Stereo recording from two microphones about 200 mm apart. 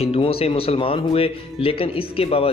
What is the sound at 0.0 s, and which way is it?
Speech, 30° left (ahead or behind).